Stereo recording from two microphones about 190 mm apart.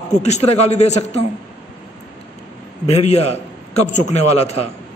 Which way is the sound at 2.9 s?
35° left (ahead or behind).